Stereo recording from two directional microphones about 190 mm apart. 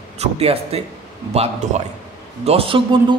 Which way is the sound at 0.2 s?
30° right (ahead or behind).